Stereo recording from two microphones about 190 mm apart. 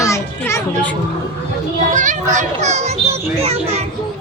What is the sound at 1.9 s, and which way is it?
A child's voice, 40° right (ahead or behind).